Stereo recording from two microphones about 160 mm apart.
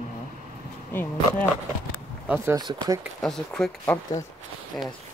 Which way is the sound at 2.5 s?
25° right (ahead or behind).